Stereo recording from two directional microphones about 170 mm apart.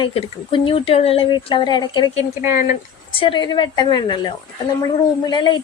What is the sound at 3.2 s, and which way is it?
A woman's voice, 30° left (ahead or behind).